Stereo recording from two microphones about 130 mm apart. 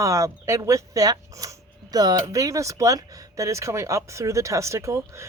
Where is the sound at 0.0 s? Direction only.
25° right (ahead or behind).